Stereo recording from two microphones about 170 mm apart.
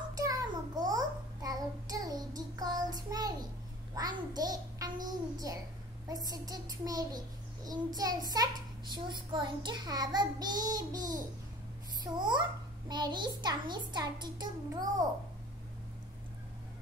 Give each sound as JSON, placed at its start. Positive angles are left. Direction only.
{"t": 0.2, "sound": "child singing", "side_deg": -20}
{"t": 3.9, "sound": "music", "side_deg": -20}
{"t": 5.0, "sound": "a sound", "side_deg": -20}
{"t": 6.0, "sound": "a child's voice", "side_deg": -20}
{"t": 12.0, "sound": "a child's voice", "side_deg": -25}